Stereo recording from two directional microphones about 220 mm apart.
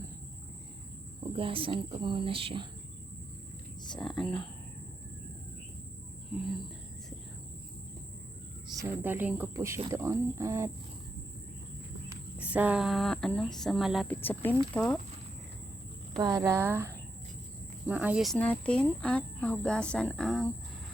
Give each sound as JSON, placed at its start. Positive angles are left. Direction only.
{"t": 1.4, "sound": "speech", "side_deg": -25}
{"t": 3.9, "sound": "speech", "side_deg": 0}
{"t": 8.7, "sound": "speech", "side_deg": -10}
{"t": 12.4, "sound": "speech", "side_deg": -5}
{"t": 16.1, "sound": "speech", "side_deg": -15}